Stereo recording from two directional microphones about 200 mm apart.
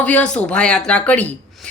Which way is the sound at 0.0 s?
5° left (ahead or behind).